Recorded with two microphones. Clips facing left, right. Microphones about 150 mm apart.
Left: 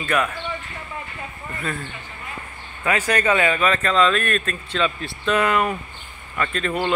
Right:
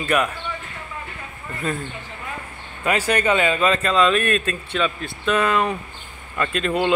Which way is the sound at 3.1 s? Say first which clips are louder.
Even; 10° right (ahead or behind).